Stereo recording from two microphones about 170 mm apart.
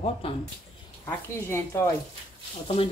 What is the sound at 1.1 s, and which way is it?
Speech, 15° left (ahead or behind).